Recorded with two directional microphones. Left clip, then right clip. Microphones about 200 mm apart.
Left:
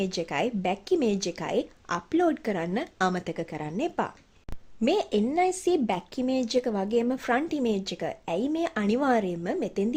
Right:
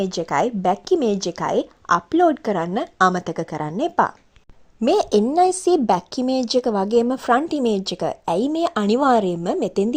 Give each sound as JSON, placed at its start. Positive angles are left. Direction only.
{"t": 0.0, "sound": "a woman's voice", "side_deg": -15}